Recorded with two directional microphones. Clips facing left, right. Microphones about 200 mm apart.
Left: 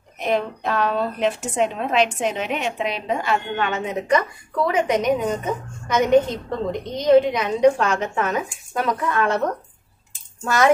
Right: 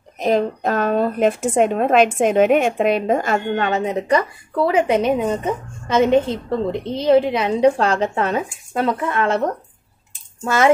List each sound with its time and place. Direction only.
0.2 s a woman's voice: 40° right (ahead or behind)